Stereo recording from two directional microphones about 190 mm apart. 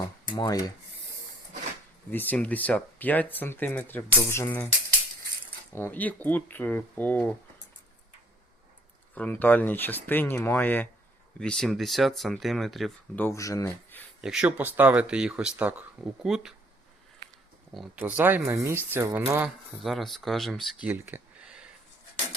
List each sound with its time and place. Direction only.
0.3 s rub: 20° left (ahead or behind)
2.0 s speech: 10° left (ahead or behind)
5.7 s speech: 10° left (ahead or behind)
9.1 s speech: 10° left (ahead or behind)
13.2 s speech: 15° left (ahead or behind)
14.2 s speech: 5° right (ahead or behind)
17.7 s speech: 5° right (ahead or behind)
20.9 s a sound: 10° right (ahead or behind)